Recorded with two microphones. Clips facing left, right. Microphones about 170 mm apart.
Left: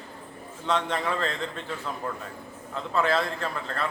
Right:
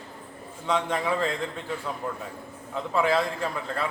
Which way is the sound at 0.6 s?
10° right (ahead or behind).